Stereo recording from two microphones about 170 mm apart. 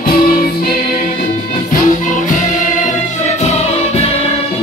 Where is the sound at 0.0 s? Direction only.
60° left (ahead or behind).